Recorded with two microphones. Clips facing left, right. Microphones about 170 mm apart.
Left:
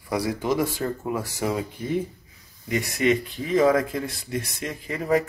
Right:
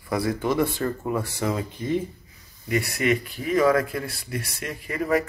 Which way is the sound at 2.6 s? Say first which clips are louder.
Left 1 dB; 20° left (ahead or behind).